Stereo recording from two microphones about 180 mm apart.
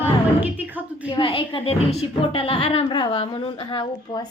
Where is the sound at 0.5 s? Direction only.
10° right (ahead or behind).